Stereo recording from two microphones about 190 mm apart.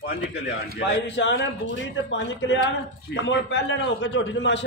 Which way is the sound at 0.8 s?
70° left (ahead or behind).